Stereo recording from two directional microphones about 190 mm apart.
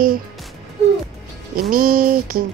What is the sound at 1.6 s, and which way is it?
Speech, 50° right (ahead or behind).